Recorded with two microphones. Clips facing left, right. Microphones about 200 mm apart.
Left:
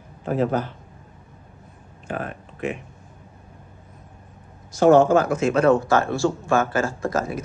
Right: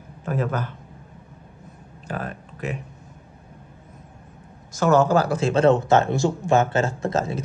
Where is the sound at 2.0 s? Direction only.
40° right (ahead or behind).